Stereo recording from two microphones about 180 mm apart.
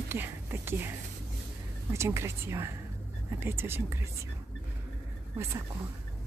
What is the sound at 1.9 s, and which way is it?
Speech, 15° right (ahead or behind).